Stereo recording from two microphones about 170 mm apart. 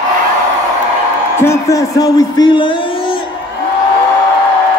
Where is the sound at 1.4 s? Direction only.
15° left (ahead or behind).